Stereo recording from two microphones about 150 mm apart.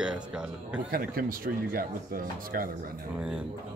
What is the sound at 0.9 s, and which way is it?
Speech, 75° right (ahead or behind).